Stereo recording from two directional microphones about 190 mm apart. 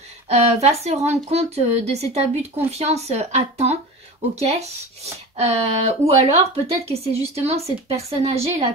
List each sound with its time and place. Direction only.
0.3 s speech: 35° right (ahead or behind)